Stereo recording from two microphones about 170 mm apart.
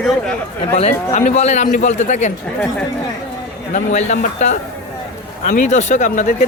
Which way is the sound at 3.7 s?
45° left (ahead or behind).